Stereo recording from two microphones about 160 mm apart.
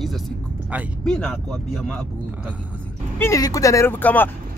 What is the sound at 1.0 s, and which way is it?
Speech, 5° left (ahead or behind).